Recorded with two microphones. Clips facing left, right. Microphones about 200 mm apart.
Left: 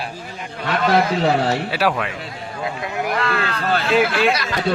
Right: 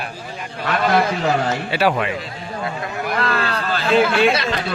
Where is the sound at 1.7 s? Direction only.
Centre (ahead or behind).